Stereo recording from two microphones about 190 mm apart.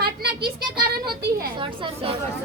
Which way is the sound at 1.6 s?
25° right (ahead or behind).